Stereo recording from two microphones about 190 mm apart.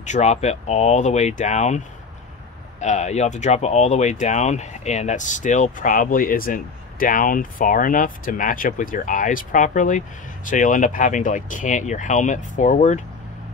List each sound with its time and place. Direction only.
0.0 s speech: 40° left (ahead or behind)
2.8 s speech: 40° left (ahead or behind)